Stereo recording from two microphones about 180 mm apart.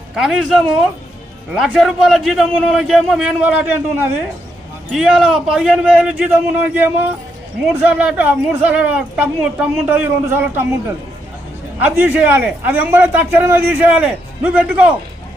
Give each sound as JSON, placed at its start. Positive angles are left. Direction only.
{"t": 0.1, "sound": "a man's voice", "side_deg": 0}
{"t": 11.8, "sound": "a man's voice", "side_deg": -10}